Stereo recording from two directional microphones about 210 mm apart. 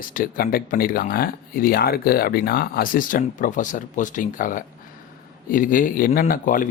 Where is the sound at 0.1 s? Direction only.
40° left (ahead or behind).